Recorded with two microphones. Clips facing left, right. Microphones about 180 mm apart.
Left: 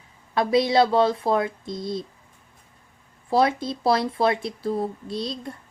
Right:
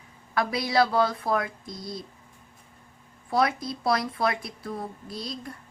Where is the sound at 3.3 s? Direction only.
25° left (ahead or behind).